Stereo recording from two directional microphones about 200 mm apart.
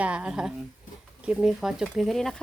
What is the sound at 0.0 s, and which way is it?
Speech, 5° right (ahead or behind).